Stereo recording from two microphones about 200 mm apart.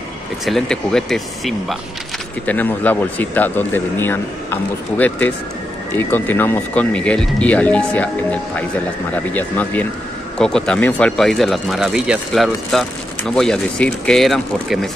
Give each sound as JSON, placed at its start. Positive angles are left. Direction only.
{"t": 0.5, "sound": "speech", "side_deg": 0}